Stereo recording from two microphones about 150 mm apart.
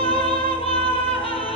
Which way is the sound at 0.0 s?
40° left (ahead or behind).